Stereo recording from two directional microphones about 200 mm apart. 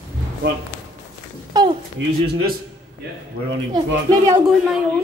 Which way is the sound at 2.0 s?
65° right (ahead or behind).